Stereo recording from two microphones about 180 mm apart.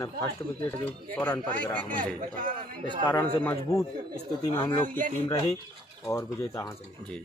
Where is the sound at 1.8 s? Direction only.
50° right (ahead or behind).